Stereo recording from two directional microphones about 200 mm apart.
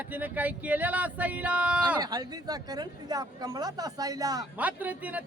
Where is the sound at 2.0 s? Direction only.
20° right (ahead or behind).